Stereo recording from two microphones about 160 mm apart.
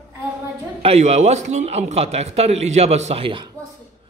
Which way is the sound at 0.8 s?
40° right (ahead or behind).